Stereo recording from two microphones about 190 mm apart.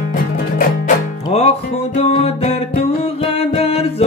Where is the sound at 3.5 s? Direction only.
30° left (ahead or behind).